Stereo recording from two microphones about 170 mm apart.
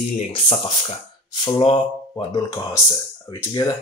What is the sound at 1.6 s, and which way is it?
Speech, 30° left (ahead or behind).